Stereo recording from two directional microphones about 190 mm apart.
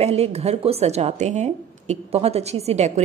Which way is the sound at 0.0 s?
30° right (ahead or behind).